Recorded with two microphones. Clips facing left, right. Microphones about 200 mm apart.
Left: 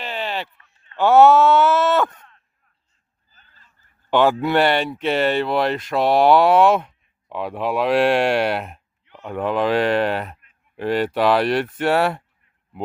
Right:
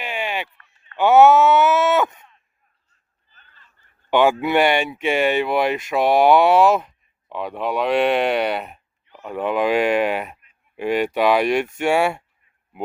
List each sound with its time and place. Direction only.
0.0 s a sound: 10° right (ahead or behind)
4.1 s speech: 10° right (ahead or behind)
6.4 s speech: centre (ahead or behind)